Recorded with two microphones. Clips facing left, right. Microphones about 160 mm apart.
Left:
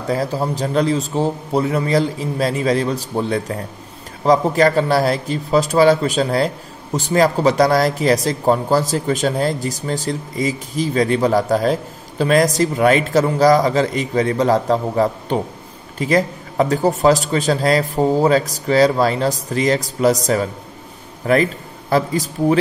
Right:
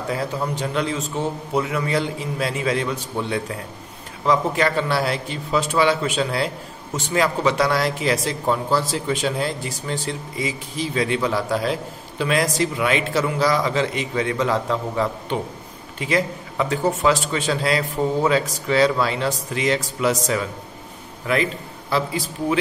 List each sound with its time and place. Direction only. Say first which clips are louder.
0.1 s a man's voice: left 6 dB; 35° left (ahead or behind)